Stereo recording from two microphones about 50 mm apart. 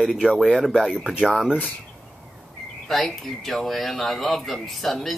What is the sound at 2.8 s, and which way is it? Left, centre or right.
Speech, centre.